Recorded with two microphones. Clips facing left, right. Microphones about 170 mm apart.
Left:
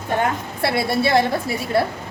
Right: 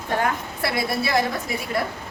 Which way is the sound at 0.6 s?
30° left (ahead or behind).